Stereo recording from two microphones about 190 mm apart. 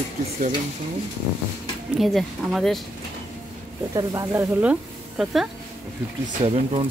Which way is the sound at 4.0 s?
15° right (ahead or behind).